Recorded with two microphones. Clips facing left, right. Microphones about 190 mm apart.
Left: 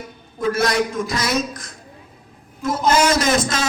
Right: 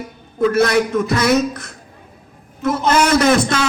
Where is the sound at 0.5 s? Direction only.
60° right (ahead or behind).